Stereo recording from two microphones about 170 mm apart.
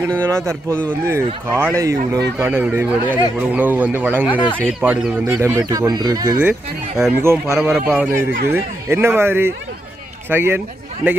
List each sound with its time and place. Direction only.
0.1 s speech: 15° right (ahead or behind)